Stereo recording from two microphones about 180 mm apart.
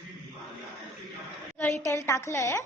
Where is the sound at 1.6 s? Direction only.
10° left (ahead or behind).